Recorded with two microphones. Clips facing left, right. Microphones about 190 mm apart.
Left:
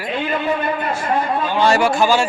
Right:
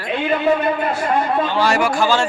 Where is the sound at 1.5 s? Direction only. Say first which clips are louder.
Left 2 dB; 25° left (ahead or behind).